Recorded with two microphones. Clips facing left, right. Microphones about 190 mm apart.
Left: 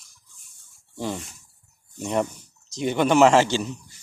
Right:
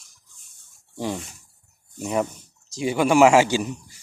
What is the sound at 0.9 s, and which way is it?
A man's voice, 15° right (ahead or behind).